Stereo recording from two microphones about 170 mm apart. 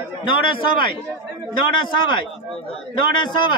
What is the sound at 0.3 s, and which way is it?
Speech, 30° left (ahead or behind).